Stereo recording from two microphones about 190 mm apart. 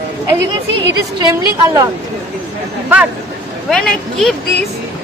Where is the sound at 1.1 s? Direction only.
20° right (ahead or behind).